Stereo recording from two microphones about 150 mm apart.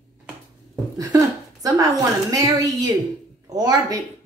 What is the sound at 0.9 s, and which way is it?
A woman's voice, 25° right (ahead or behind).